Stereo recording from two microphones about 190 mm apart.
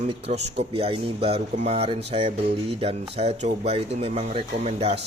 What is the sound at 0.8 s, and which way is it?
Speech, 30° right (ahead or behind).